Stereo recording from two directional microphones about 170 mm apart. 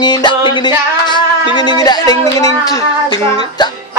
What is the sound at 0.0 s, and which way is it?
A woman's voice, 25° left (ahead or behind).